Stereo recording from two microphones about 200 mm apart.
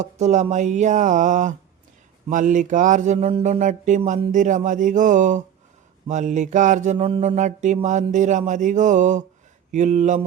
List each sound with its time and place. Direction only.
0.0 s mantra: 35° right (ahead or behind)